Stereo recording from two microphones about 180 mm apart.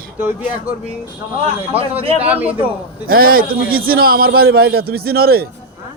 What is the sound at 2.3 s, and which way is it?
Speech, 10° right (ahead or behind).